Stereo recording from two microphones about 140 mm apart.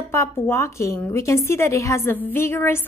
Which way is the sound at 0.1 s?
20° left (ahead or behind).